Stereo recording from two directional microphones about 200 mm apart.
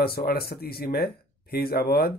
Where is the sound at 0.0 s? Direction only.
50° left (ahead or behind).